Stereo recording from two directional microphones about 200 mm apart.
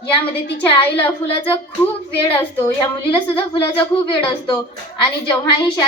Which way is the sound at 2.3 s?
10° left (ahead or behind).